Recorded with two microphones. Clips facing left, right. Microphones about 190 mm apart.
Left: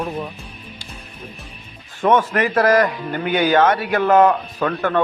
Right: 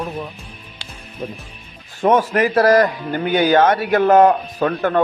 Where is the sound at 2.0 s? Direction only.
35° right (ahead or behind).